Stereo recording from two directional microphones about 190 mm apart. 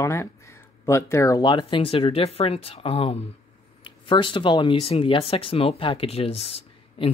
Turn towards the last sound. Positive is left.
turn(degrees=30)  # may be behind; listen again after turning